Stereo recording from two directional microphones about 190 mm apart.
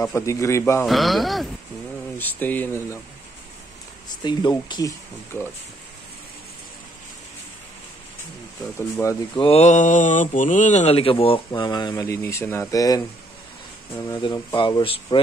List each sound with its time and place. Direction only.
0.0 s a man's voice: 15° left (ahead or behind)
0.8 s a man's voice: centre (ahead or behind)
4.1 s mantra: 20° left (ahead or behind)
9.0 s mantra: 25° left (ahead or behind)